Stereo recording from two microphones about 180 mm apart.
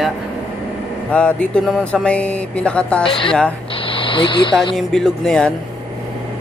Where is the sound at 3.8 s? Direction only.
30° left (ahead or behind).